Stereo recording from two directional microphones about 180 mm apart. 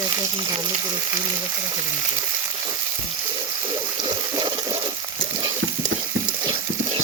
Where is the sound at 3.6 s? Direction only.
25° right (ahead or behind).